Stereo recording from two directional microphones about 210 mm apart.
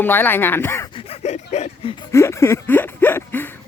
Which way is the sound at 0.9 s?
30° left (ahead or behind).